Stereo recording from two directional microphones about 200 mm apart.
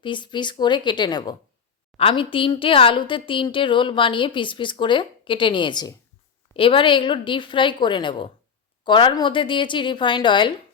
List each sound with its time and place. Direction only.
0.0 s a woman's voice: 25° left (ahead or behind)